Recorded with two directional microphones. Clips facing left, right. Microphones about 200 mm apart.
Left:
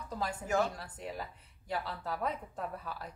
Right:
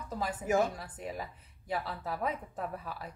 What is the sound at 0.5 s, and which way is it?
Speech, 15° right (ahead or behind).